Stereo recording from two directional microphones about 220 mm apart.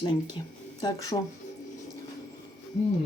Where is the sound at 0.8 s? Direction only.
15° left (ahead or behind).